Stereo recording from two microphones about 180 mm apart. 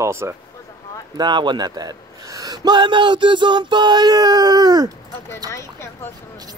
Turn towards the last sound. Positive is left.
turn(degrees=15)  # may be behind; listen again after turning